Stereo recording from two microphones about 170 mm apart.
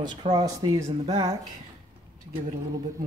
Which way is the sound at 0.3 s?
25° right (ahead or behind).